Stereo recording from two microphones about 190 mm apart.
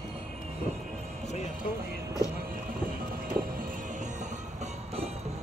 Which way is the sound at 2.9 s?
50° right (ahead or behind).